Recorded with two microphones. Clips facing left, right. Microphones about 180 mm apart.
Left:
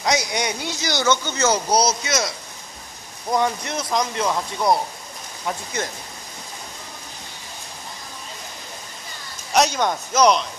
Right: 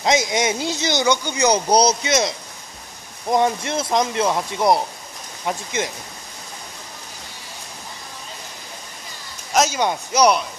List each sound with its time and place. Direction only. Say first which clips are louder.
0.0 s speech: right 4 dB; 25° right (ahead or behind)
1.7 s speech: right 3 dB; 25° right (ahead or behind)
9.5 s a sound: even; centre (ahead or behind)
9.8 s a man's voice: right 1 dB; 10° right (ahead or behind)